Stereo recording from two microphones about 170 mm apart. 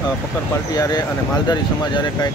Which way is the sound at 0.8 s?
25° left (ahead or behind).